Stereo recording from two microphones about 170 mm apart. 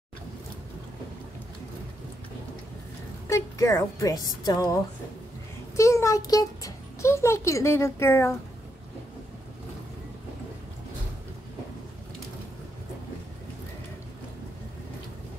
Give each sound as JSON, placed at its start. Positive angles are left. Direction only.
{"t": 3.3, "sound": "a woman's voice", "side_deg": 20}
{"t": 5.8, "sound": "speech", "side_deg": 15}